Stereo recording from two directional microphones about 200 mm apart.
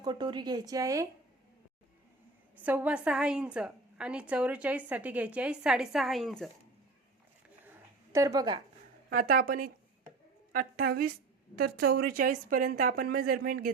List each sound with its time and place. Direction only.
0.0 s speech: 25° right (ahead or behind)
2.6 s a woman's voice: 10° right (ahead or behind)
7.6 s a sound: 10° right (ahead or behind)
9.3 s speech: 45° right (ahead or behind)